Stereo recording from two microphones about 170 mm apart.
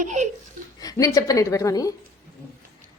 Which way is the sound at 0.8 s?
20° left (ahead or behind).